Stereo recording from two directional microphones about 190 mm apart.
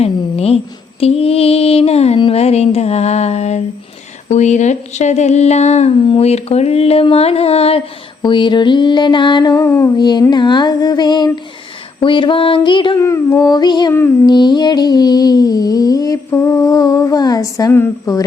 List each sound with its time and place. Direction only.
0.0 s female singing: 30° left (ahead or behind)
4.3 s speech: 40° left (ahead or behind)
13.0 s speech: 15° left (ahead or behind)